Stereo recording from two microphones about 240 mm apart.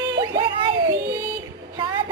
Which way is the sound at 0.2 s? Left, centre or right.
Centre.